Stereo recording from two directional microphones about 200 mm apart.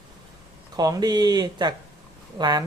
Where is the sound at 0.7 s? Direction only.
20° right (ahead or behind).